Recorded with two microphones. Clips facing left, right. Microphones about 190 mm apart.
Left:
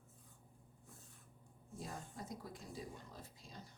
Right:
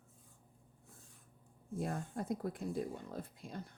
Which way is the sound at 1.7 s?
60° right (ahead or behind).